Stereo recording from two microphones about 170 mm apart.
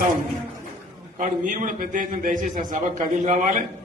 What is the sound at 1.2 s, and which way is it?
A man's voice, 50° right (ahead or behind).